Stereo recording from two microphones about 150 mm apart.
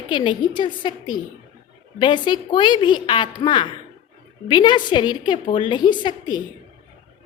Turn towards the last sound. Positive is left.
turn(degrees=30)  # may be behind; listen again after turning